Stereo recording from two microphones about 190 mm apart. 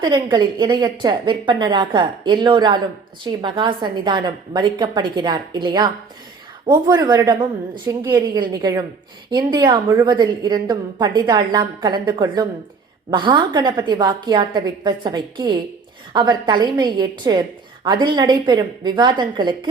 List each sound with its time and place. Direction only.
0.0 s a woman's voice: 25° right (ahead or behind)